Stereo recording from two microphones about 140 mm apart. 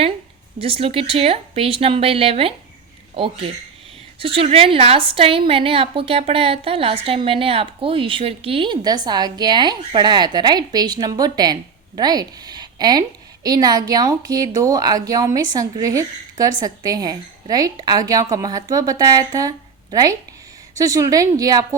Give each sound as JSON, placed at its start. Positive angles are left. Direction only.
{"t": 0.6, "sound": "a woman's voice", "side_deg": -45}